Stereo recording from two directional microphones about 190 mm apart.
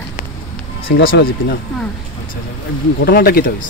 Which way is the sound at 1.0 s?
55° left (ahead or behind).